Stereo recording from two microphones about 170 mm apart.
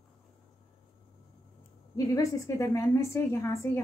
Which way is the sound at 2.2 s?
20° left (ahead or behind).